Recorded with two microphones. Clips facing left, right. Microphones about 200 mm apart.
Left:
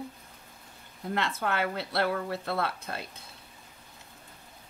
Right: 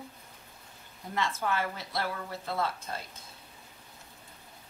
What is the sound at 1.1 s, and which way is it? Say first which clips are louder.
A woman's voice: left 1 dB; 65° left (ahead or behind).